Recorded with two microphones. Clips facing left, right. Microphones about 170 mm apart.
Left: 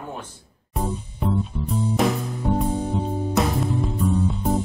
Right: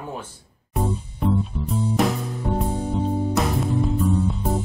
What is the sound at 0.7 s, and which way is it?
Music, centre (ahead or behind).